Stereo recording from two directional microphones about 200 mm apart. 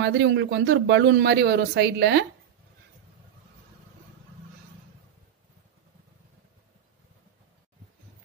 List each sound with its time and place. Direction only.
0.0 s speech: 60° right (ahead or behind)